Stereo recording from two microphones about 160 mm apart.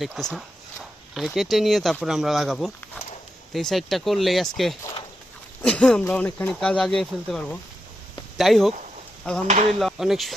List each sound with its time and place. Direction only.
0.0 s speech: centre (ahead or behind)
9.5 s speech: 45° right (ahead or behind)
9.7 s speech: centre (ahead or behind)